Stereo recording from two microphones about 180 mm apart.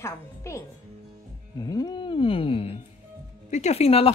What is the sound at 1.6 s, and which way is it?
Speech, 20° left (ahead or behind).